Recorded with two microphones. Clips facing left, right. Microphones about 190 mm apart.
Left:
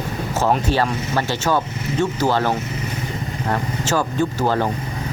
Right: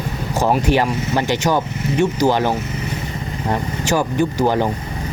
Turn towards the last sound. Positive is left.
turn(degrees=-15)  # may be behind; listen again after turning